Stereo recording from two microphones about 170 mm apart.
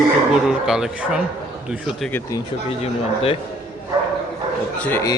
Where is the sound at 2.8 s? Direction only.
35° left (ahead or behind).